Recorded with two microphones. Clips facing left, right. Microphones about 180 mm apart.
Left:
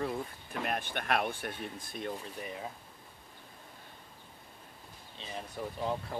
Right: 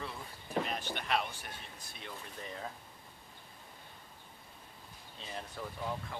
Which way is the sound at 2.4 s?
15° left (ahead or behind).